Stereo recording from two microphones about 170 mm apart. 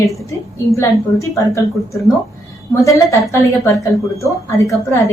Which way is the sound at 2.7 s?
15° left (ahead or behind).